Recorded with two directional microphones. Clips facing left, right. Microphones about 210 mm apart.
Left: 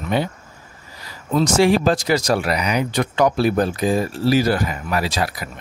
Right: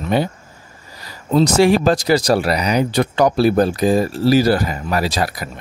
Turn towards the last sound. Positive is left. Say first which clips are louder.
# right 2 dB
turn(degrees=-40)  # may be behind; listen again after turning